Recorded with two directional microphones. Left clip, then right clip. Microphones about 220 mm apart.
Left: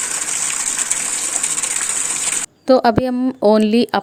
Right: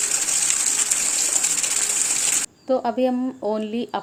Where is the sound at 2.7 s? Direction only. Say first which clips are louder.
Left 8 dB; 50° left (ahead or behind).